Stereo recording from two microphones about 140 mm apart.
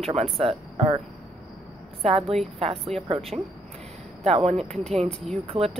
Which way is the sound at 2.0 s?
45° right (ahead or behind).